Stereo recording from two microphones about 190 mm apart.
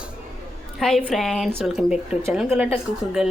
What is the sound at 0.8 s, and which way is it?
A woman's voice, centre (ahead or behind).